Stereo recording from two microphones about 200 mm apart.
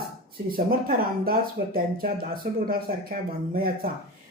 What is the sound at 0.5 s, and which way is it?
Speech, 45° right (ahead or behind).